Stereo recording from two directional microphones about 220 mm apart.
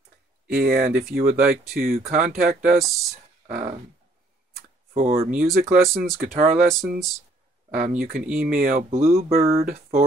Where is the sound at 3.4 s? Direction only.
35° right (ahead or behind).